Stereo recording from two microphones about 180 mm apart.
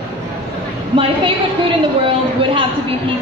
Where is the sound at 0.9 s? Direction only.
30° right (ahead or behind).